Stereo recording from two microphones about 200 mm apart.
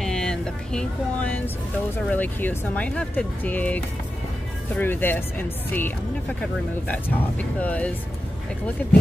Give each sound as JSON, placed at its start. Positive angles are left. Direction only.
{"t": 0.0, "sound": "a sound", "side_deg": 5}
{"t": 2.0, "sound": "speech", "side_deg": 10}
{"t": 7.6, "sound": "speech", "side_deg": 5}